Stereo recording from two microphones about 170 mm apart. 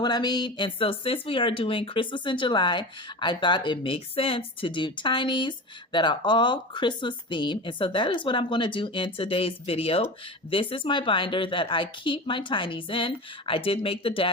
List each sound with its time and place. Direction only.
0.0 s a woman's voice: 25° left (ahead or behind)